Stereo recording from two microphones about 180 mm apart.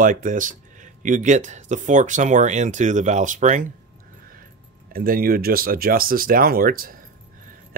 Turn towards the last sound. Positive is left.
turn(degrees=-55)  # may be behind; listen again after turning